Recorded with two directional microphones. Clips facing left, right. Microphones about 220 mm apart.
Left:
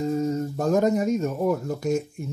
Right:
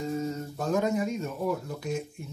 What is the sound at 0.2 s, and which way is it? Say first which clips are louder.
Speech: left 7 dB; 45° left (ahead or behind).